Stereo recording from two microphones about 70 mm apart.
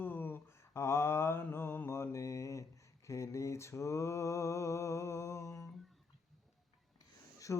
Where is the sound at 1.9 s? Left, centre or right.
Left.